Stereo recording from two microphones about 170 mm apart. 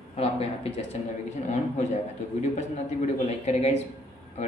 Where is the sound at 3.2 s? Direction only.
40° left (ahead or behind).